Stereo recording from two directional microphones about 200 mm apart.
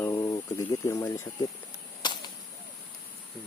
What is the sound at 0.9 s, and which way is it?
Speech, 15° left (ahead or behind).